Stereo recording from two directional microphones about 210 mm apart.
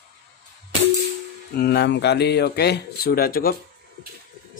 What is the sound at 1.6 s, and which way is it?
Speech, 50° left (ahead or behind).